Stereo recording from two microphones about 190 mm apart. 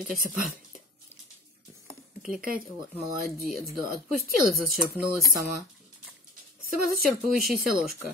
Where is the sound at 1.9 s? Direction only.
5° right (ahead or behind).